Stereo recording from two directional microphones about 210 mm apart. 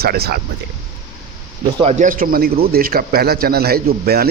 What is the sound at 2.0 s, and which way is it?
A man's voice, 40° right (ahead or behind).